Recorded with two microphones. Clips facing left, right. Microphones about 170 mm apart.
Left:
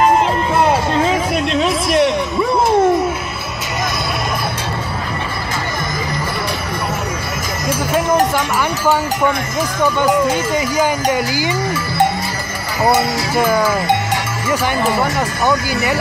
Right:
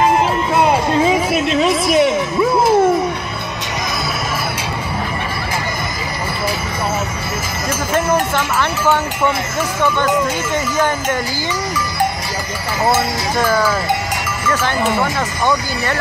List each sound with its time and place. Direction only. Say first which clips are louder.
1.0 s speech: right 1 dB; 5° right (ahead or behind)
2.6 s a sound: left 1 dB; centre (ahead or behind)
9.8 s speech: left 2 dB; 10° left (ahead or behind)
12.9 s speech: left 2 dB; 15° left (ahead or behind)
14.8 s speech: left 1 dB; 10° left (ahead or behind)